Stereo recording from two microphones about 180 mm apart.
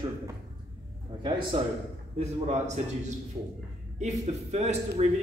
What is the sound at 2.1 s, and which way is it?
A man's voice, 40° right (ahead or behind).